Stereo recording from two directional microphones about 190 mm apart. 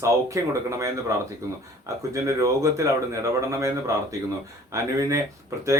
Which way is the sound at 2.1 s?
15° right (ahead or behind).